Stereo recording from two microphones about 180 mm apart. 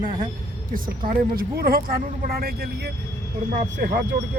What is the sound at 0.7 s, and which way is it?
Speech, 50° right (ahead or behind).